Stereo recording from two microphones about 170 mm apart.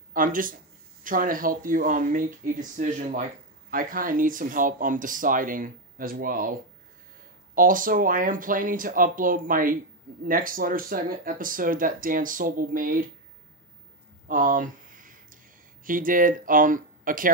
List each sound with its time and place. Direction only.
0.1 s speech: 55° right (ahead or behind)
7.5 s speech: 55° right (ahead or behind)
14.2 s a sound: 50° right (ahead or behind)
15.8 s speech: 55° right (ahead or behind)